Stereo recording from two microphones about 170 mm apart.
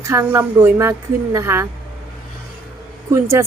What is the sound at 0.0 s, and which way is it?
A woman's voice, 15° right (ahead or behind).